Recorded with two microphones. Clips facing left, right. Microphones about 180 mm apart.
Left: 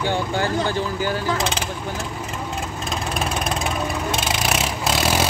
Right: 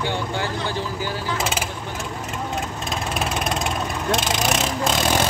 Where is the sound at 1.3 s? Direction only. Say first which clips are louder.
Left 1 dB; 5° right (ahead or behind).